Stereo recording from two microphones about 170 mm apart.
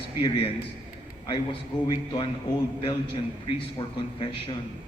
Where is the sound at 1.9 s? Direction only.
25° left (ahead or behind).